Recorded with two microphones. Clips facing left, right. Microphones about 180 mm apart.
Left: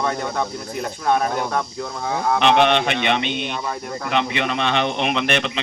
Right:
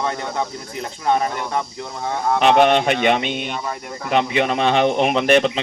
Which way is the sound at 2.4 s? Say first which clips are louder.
Right 3 dB; 40° right (ahead or behind).